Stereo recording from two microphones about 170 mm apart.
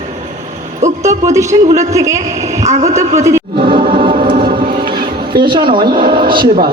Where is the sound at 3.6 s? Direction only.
30° right (ahead or behind).